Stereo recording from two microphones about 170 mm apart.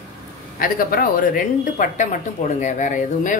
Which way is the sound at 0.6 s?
55° left (ahead or behind).